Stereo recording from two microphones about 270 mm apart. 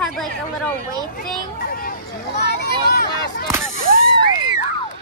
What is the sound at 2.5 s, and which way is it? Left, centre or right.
Speech, left.